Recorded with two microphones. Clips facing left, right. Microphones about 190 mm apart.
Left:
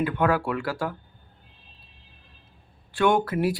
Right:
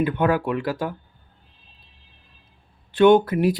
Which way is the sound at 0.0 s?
20° right (ahead or behind).